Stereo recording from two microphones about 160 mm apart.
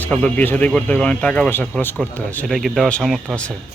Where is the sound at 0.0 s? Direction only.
10° left (ahead or behind).